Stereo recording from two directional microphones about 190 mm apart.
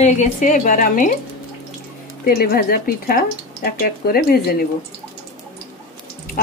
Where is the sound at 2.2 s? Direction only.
50° left (ahead or behind).